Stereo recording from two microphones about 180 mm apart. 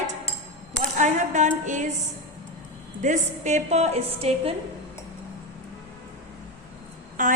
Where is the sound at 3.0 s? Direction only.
45° right (ahead or behind).